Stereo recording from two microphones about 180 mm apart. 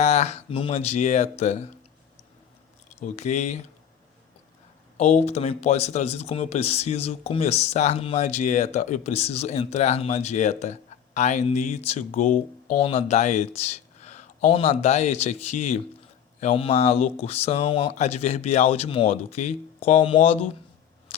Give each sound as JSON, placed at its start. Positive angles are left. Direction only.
{"t": 0.0, "sound": "speech", "side_deg": 35}
{"t": 3.0, "sound": "speech", "side_deg": 40}
{"t": 4.9, "sound": "speech", "side_deg": 40}
{"t": 12.8, "sound": "speech", "side_deg": 35}